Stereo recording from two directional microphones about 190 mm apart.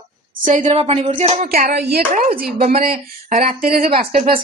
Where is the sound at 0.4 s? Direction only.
40° right (ahead or behind).